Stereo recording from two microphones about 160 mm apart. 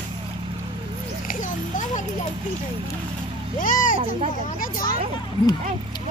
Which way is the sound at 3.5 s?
55° left (ahead or behind).